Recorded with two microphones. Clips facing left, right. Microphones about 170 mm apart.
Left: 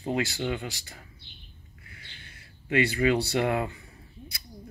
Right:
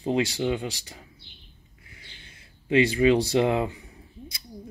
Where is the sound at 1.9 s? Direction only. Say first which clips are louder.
Even; 20° right (ahead or behind).